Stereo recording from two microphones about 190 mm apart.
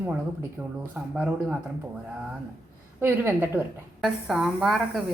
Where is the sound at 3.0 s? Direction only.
10° right (ahead or behind).